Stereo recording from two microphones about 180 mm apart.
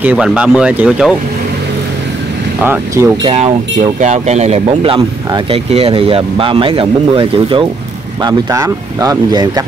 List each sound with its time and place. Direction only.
0.0 s speech: 5° right (ahead or behind)
2.6 s speech: 10° right (ahead or behind)
3.3 s speech: 30° right (ahead or behind)